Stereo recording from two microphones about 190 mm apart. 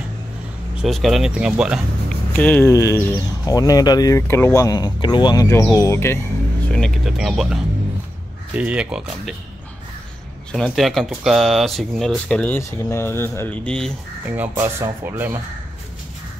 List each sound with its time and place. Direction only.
0.7 s speech: centre (ahead or behind)
2.3 s speech: 10° left (ahead or behind)
6.7 s speech: centre (ahead or behind)
8.5 s speech: 5° right (ahead or behind)
10.5 s speech: centre (ahead or behind)
14.3 s speech: 10° right (ahead or behind)